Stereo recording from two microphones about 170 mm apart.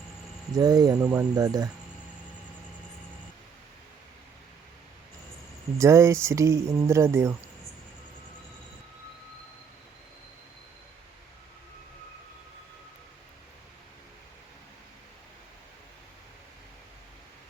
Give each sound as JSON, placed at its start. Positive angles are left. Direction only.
{"t": 0.5, "sound": "speech", "side_deg": -20}
{"t": 5.7, "sound": "speech", "side_deg": -20}